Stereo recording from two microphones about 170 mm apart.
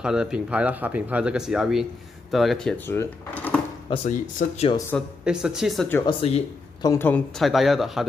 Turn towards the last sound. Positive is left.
turn(degrees=0)  # may be behind; listen again after turning